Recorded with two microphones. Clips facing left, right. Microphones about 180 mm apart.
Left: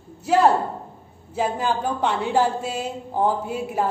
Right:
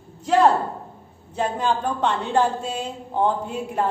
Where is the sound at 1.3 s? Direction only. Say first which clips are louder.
Even; 5° left (ahead or behind).